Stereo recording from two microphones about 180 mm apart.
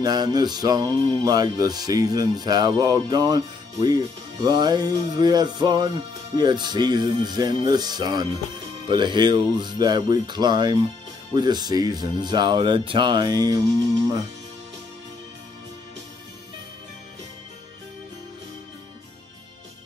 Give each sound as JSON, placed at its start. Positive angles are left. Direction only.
{"t": 0.0, "sound": "music", "side_deg": -20}